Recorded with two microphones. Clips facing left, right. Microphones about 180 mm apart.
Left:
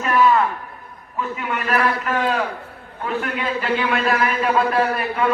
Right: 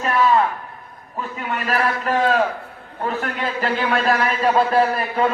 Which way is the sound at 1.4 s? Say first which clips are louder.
Even; 35° right (ahead or behind).